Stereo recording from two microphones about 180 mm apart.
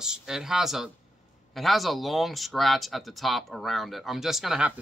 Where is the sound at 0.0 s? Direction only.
5° right (ahead or behind).